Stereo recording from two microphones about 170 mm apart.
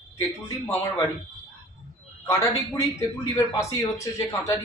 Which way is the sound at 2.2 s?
20° left (ahead or behind).